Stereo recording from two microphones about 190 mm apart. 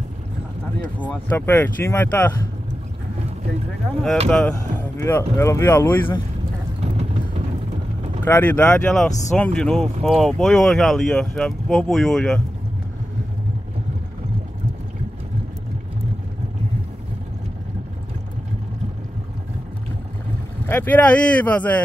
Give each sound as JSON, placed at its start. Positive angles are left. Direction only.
{"t": 0.7, "sound": "speech", "side_deg": 10}
{"t": 4.3, "sound": "speech", "side_deg": 5}
{"t": 6.8, "sound": "vehicle", "side_deg": -35}
{"t": 8.2, "sound": "speech", "side_deg": 10}
{"t": 20.6, "sound": "speech", "side_deg": 10}